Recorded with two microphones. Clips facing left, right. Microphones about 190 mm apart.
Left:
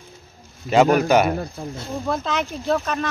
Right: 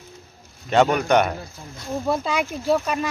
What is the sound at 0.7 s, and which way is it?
Speech, 5° left (ahead or behind).